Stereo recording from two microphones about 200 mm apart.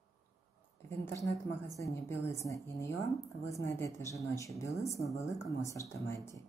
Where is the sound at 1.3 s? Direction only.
75° left (ahead or behind).